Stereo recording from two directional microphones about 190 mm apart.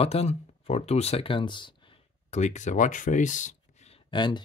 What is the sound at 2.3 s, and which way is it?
Speech, 40° left (ahead or behind).